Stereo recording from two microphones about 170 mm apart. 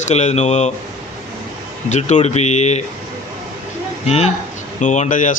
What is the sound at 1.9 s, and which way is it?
Speech, 45° left (ahead or behind).